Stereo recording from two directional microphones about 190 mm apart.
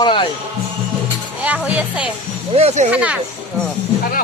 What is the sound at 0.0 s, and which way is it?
Music, 25° left (ahead or behind).